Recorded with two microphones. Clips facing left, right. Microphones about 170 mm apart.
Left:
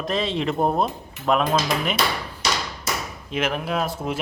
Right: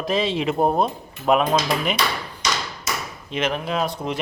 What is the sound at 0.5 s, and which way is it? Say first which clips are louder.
Speech: right 2 dB; 15° right (ahead or behind).